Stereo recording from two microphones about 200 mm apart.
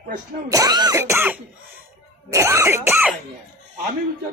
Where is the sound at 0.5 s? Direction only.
20° right (ahead or behind).